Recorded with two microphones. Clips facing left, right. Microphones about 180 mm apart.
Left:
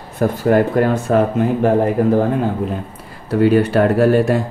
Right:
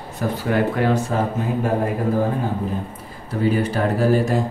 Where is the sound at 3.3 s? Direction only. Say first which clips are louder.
Left 7 dB; 70° left (ahead or behind).